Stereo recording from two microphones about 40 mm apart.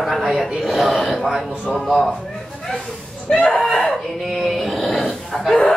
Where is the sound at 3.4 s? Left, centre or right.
Left.